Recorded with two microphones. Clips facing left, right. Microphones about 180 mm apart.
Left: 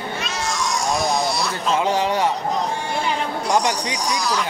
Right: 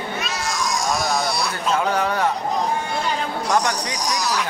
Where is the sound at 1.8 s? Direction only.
20° left (ahead or behind).